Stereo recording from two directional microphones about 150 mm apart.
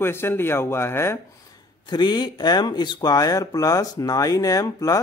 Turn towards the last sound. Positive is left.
turn(degrees=25)  # may be behind; listen again after turning